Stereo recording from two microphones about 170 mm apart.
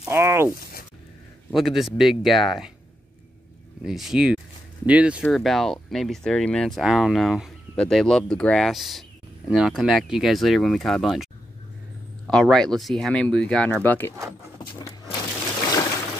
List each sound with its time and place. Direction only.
0.0 s speech: 15° right (ahead or behind)
1.5 s speech: centre (ahead or behind)
3.8 s speech: centre (ahead or behind)
12.3 s speech: centre (ahead or behind)
14.8 s a sound: 20° left (ahead or behind)